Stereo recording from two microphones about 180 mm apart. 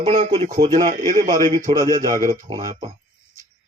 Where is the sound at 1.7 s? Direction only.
15° left (ahead or behind).